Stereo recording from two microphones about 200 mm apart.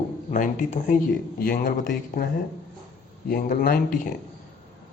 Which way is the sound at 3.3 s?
45° left (ahead or behind).